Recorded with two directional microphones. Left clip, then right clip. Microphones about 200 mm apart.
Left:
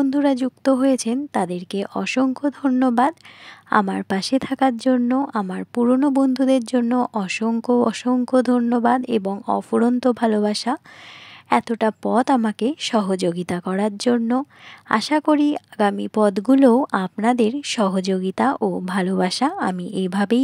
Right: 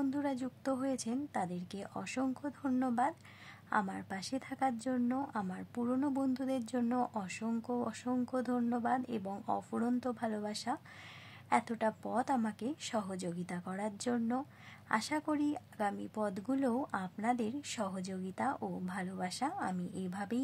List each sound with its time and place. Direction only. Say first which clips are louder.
0.0 s speech: left 17 dB; 40° left (ahead or behind)